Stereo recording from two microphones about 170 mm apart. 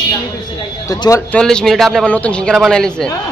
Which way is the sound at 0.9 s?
20° left (ahead or behind).